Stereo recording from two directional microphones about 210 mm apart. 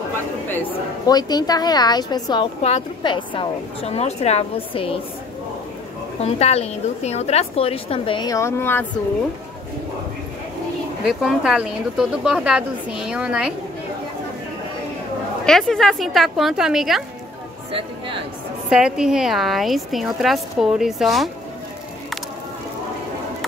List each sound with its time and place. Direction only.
0.5 s a woman's voice: 15° left (ahead or behind)
6.2 s a woman's voice: 30° left (ahead or behind); by 8.8 s 10° left (ahead or behind)
11.1 s speech: centre (ahead or behind)
15.4 s speech: centre (ahead or behind)
17.6 s speech: 25° right (ahead or behind)
18.7 s speech: 5° right (ahead or behind)